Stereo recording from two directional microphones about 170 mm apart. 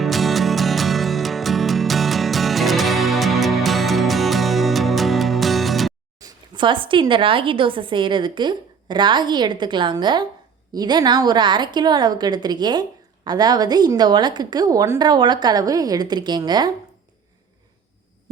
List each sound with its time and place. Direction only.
0.0 s music: centre (ahead or behind)
6.1 s speech: 25° right (ahead or behind)